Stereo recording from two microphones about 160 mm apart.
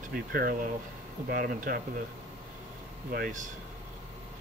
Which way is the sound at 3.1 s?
60° right (ahead or behind).